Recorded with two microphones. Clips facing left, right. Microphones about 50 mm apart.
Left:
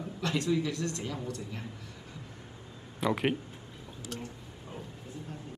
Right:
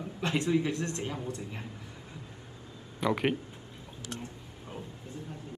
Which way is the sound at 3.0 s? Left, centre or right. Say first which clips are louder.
Right 1 dB; centre.